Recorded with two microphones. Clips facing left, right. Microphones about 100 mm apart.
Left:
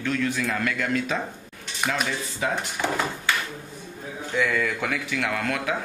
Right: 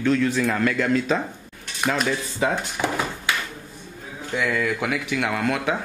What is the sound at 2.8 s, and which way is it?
Speech, 15° right (ahead or behind).